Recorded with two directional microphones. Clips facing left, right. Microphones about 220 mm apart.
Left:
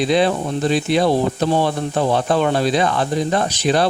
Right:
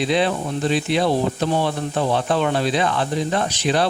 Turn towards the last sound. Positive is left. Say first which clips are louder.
# left 3 dB
turn(degrees=40)  # may be behind; listen again after turning